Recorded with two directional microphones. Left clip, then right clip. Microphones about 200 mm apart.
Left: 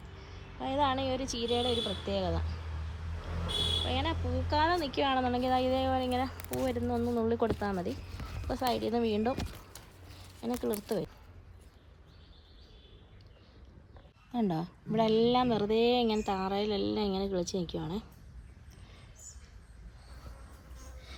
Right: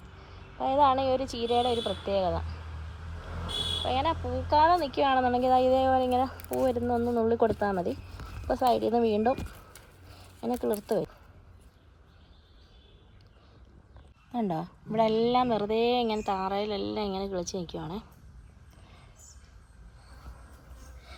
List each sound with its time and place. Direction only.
0.2 s a woman's voice: 10° left (ahead or behind)
3.4 s vehicle: 45° left (ahead or behind)
3.8 s speech: 10° left (ahead or behind)
10.4 s speech: 5° left (ahead or behind)
14.3 s speech: 10° left (ahead or behind)